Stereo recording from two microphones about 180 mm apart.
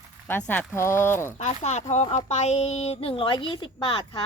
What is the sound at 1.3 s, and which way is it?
A woman's voice, 40° left (ahead or behind).